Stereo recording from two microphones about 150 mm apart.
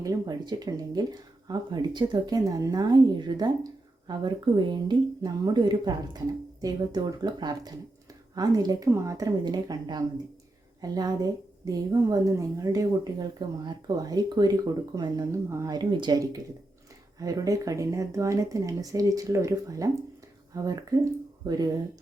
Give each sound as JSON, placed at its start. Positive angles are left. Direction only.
{"t": 0.0, "sound": "speech", "side_deg": -25}